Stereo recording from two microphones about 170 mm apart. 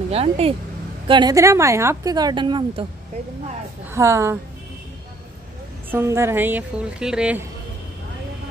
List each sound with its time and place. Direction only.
0.1 s speech: 35° right (ahead or behind)
3.9 s a woman's voice: 15° right (ahead or behind)
5.9 s a woman's voice: 15° right (ahead or behind)